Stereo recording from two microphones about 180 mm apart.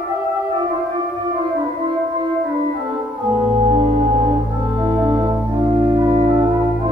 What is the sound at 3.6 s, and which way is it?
Music, 30° right (ahead or behind).